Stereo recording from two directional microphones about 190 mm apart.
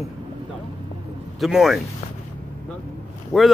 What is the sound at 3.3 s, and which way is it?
Speech, centre (ahead or behind).